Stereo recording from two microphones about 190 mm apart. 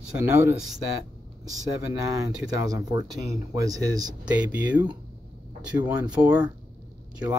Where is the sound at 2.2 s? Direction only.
20° right (ahead or behind).